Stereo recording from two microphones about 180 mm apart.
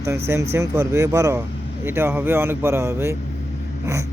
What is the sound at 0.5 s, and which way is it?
Speech, 15° right (ahead or behind).